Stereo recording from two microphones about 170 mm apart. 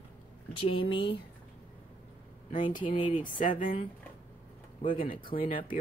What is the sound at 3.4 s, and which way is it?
Speech, 50° left (ahead or behind).